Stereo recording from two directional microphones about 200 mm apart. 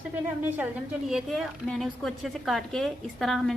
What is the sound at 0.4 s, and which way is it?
A woman's voice, 10° right (ahead or behind).